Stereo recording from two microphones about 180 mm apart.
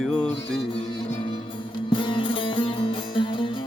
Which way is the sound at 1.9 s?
25° left (ahead or behind).